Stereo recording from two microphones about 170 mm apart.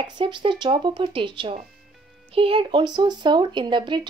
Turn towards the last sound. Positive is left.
turn(degrees=-25)  # may be behind; listen again after turning